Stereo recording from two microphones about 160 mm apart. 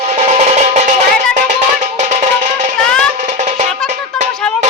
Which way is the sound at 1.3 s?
45° right (ahead or behind).